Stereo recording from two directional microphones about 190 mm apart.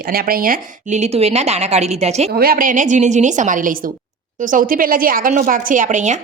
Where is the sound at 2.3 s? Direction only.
50° right (ahead or behind).